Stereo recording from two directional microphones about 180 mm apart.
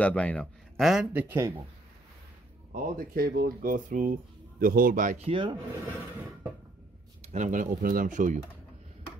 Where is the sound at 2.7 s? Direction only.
50° right (ahead or behind).